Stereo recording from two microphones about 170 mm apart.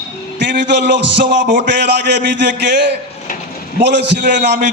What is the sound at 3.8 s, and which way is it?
Speech, 90° right.